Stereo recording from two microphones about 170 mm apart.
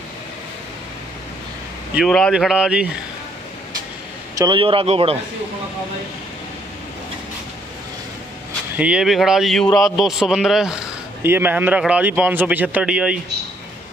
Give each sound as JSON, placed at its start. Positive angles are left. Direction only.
{"t": 2.0, "sound": "a man's voice", "side_deg": 5}
{"t": 4.4, "sound": "speech", "side_deg": -30}
{"t": 8.7, "sound": "a man's voice", "side_deg": -5}